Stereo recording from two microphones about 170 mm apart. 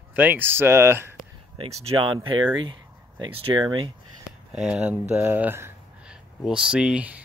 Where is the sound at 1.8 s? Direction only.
35° right (ahead or behind).